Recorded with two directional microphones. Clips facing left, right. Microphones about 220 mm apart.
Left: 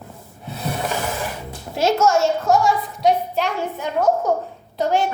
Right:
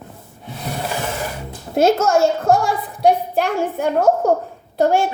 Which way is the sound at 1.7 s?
55° right (ahead or behind).